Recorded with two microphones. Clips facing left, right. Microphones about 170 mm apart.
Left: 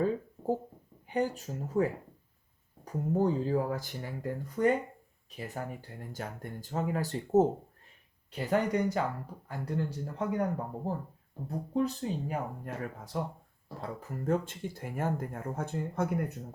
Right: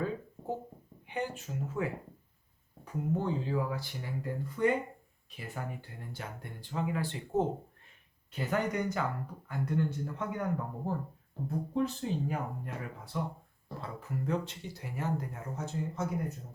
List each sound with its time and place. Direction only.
1.0 s speech: 40° left (ahead or behind); by 16.1 s 55° left (ahead or behind)